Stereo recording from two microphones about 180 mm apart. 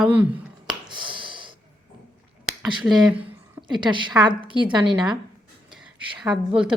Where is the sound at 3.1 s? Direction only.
25° right (ahead or behind).